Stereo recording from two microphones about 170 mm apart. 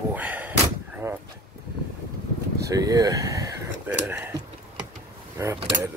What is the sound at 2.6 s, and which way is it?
Speech, 20° right (ahead or behind).